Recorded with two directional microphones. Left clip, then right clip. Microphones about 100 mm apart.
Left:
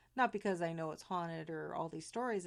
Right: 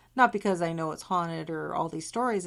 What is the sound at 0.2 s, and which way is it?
A woman's voice, 45° left (ahead or behind).